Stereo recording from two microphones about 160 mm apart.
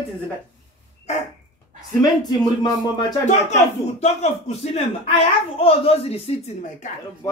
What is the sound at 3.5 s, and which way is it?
Speech, 45° left (ahead or behind).